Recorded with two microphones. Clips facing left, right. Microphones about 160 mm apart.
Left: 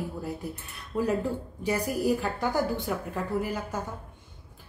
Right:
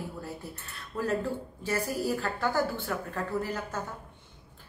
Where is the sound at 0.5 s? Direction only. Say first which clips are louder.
Left 5 dB; 15° left (ahead or behind).